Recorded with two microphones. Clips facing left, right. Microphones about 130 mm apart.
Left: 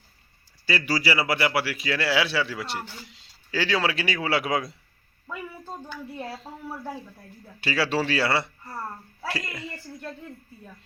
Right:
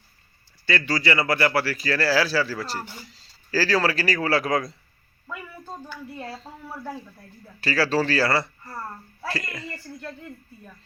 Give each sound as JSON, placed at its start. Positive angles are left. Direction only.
{"t": 0.6, "sound": "a man's voice", "side_deg": 10}
{"t": 6.1, "sound": "a man's voice", "side_deg": 5}